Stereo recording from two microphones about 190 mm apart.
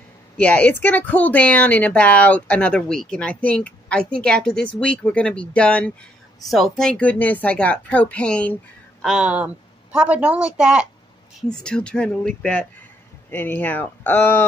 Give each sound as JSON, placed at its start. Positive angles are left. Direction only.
{"t": 0.4, "sound": "speech", "side_deg": 5}
{"t": 9.0, "sound": "a woman's voice", "side_deg": -5}